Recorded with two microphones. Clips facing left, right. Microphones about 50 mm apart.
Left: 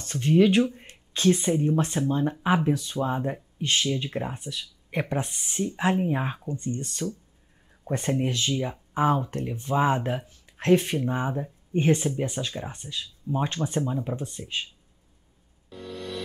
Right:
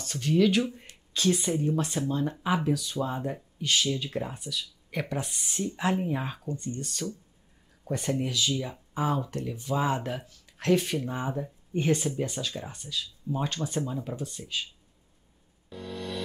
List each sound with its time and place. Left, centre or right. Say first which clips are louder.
0.0 s speech: left 4 dB; left
15.7 s music: even; centre